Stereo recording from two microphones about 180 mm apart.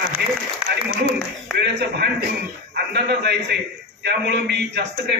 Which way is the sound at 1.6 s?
65° right (ahead or behind).